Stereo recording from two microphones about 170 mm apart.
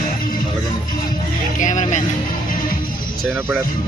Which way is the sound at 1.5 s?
45° left (ahead or behind).